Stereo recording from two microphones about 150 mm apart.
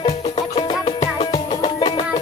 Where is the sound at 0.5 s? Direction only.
40° left (ahead or behind).